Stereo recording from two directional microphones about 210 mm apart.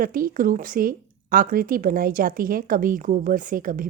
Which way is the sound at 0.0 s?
45° right (ahead or behind).